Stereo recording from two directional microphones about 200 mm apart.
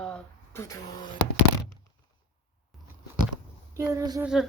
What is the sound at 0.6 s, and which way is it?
Speech, 15° left (ahead or behind).